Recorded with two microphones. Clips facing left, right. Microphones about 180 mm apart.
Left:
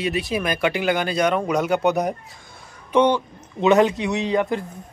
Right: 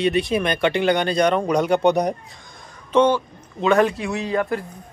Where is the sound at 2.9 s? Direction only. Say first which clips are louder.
Right 1 dB; 15° left (ahead or behind).